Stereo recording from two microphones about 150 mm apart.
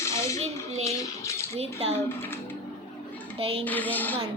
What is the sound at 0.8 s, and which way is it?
Bathtub, 20° left (ahead or behind).